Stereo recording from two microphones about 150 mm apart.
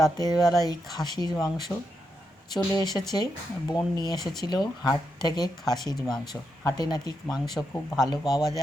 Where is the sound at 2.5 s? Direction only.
25° left (ahead or behind).